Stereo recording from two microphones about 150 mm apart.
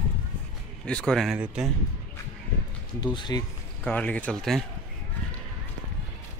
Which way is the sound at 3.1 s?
30° left (ahead or behind).